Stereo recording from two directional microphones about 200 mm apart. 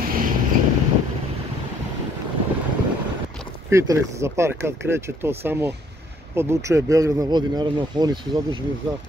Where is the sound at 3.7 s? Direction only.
15° right (ahead or behind).